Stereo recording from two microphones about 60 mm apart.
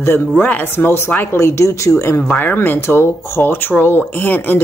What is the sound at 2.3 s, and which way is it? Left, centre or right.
Speech, left.